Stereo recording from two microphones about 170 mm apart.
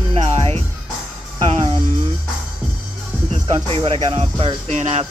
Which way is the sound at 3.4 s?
30° right (ahead or behind).